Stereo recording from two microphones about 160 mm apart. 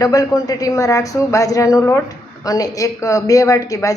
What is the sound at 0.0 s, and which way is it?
A woman's voice, 25° left (ahead or behind).